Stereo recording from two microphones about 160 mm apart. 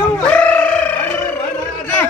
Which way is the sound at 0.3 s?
10° left (ahead or behind).